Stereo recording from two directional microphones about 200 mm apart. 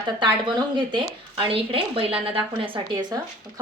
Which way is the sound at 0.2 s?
25° right (ahead or behind).